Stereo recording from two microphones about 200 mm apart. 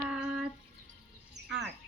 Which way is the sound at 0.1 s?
5° right (ahead or behind).